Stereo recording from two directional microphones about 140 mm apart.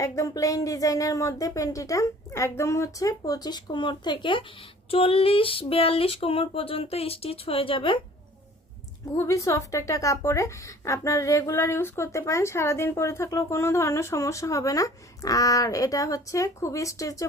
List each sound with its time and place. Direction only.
0.0 s speech: 25° left (ahead or behind); by 7.9 s 40° left (ahead or behind)
9.1 s speech: 20° left (ahead or behind)